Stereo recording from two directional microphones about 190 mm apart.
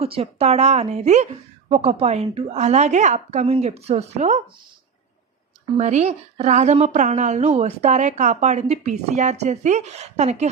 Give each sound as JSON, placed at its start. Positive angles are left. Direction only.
{"t": 0.0, "sound": "a woman's voice", "side_deg": -30}
{"t": 5.7, "sound": "a woman's voice", "side_deg": -35}